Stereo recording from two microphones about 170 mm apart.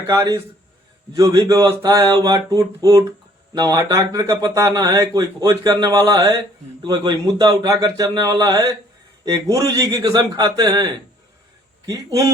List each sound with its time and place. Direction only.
0.1 s speech: 20° right (ahead or behind)